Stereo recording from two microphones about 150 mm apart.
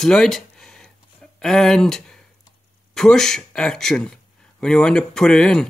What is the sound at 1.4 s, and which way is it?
A man's voice, 5° left (ahead or behind).